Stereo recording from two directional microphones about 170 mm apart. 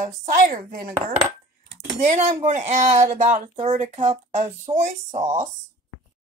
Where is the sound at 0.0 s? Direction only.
50° right (ahead or behind).